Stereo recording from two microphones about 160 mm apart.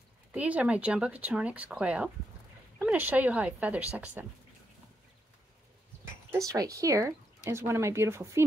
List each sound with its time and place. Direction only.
0.3 s speech: 10° right (ahead or behind)
6.3 s speech: 20° right (ahead or behind)